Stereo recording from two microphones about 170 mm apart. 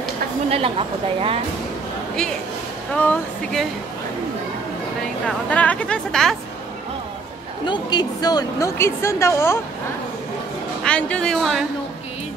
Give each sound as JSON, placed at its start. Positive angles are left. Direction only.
{"t": 0.5, "sound": "speech", "side_deg": -35}
{"t": 3.0, "sound": "a woman's voice", "side_deg": 10}
{"t": 5.5, "sound": "a woman's voice", "side_deg": 5}
{"t": 7.6, "sound": "a woman's voice", "side_deg": 25}
{"t": 10.8, "sound": "speech", "side_deg": 5}